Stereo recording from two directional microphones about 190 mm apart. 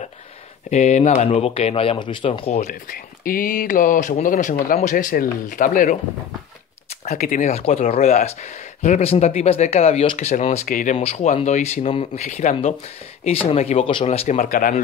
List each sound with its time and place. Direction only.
0.7 s speech: 35° left (ahead or behind)
2.6 s speech: 50° left (ahead or behind)